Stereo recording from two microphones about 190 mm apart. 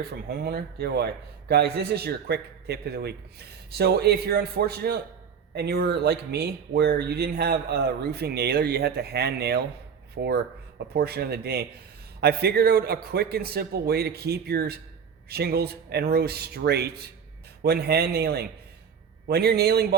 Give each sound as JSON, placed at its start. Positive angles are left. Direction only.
{"t": 0.0, "sound": "speech", "side_deg": -55}